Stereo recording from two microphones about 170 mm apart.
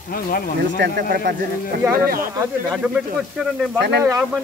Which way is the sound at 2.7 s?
5° right (ahead or behind).